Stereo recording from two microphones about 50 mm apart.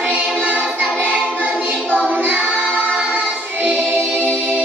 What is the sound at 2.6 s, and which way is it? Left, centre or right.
Music, right.